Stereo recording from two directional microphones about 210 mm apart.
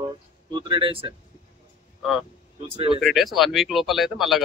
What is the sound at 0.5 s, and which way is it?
Speech, 20° right (ahead or behind).